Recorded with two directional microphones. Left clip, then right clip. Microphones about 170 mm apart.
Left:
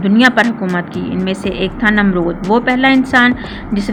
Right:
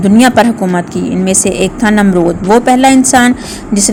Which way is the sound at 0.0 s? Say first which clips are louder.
Right 4 dB; 30° right (ahead or behind).